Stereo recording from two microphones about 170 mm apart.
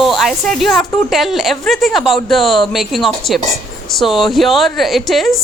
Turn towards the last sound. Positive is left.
turn(degrees=0)  # may be behind; listen again after turning